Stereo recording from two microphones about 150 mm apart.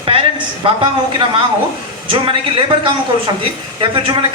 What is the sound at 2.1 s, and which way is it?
A man's voice, 35° right (ahead or behind).